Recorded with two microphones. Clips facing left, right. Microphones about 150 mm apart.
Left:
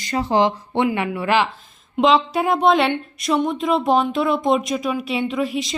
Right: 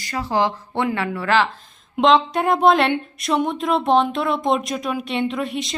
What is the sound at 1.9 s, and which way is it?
Speech, centre (ahead or behind).